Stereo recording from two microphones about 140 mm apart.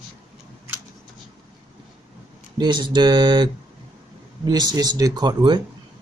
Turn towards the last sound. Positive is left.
turn(degrees=-30)  # may be behind; listen again after turning